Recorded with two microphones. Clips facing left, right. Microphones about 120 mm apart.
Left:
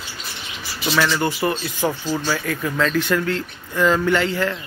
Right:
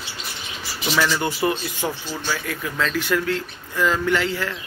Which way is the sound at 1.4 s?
15° right (ahead or behind).